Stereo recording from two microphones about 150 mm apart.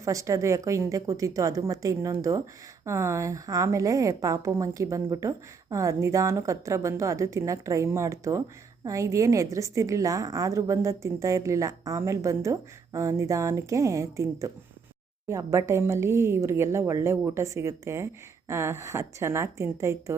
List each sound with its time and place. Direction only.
0.0 s a woman's voice: 20° right (ahead or behind)